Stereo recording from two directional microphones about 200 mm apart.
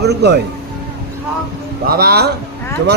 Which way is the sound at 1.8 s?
50° right (ahead or behind).